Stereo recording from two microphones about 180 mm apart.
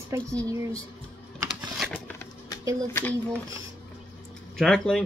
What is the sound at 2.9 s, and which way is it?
Speech, 15° left (ahead or behind).